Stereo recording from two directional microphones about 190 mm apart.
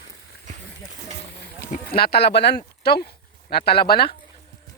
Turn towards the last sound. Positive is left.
turn(degrees=55)  # may be behind; listen again after turning